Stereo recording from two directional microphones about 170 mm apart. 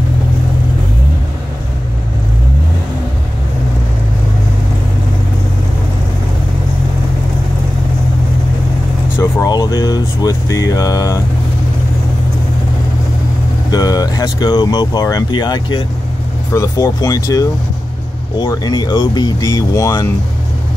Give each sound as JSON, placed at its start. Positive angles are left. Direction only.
{"t": 9.2, "sound": "speech", "side_deg": 20}
{"t": 13.7, "sound": "speech", "side_deg": 20}